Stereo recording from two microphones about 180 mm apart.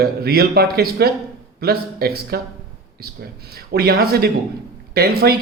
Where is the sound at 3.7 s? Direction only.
60° right (ahead or behind).